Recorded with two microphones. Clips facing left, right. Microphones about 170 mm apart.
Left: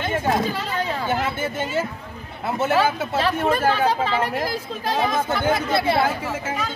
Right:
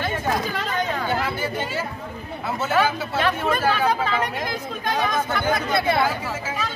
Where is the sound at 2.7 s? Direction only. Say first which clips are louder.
Even; 30° left (ahead or behind).